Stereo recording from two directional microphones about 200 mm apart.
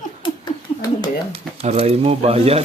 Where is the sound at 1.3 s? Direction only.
30° right (ahead or behind).